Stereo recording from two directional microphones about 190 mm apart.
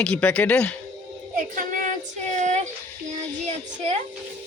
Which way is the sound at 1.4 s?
45° right (ahead or behind).